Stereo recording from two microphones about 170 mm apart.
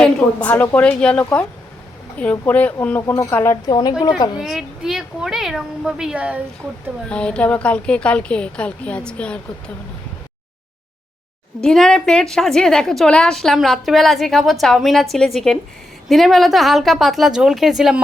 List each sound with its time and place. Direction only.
0.0 s a woman's voice: 10° left (ahead or behind); by 3.9 s 25° left (ahead or behind)
4.4 s a woman's voice: centre (ahead or behind)
7.1 s a woman's voice: 5° left (ahead or behind)
11.6 s a woman's voice: 5° left (ahead or behind)